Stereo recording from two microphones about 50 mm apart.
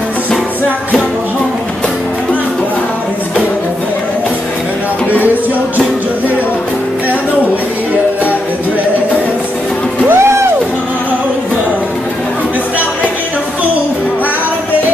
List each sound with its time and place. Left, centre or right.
10.1 s music: right